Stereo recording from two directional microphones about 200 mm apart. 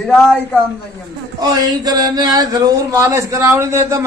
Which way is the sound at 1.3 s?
20° right (ahead or behind).